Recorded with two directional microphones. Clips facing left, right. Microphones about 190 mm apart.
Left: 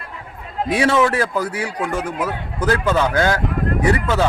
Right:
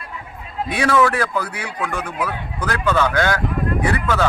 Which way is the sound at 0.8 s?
25° left (ahead or behind).